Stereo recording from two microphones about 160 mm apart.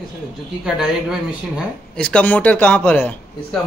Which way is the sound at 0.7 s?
5° right (ahead or behind).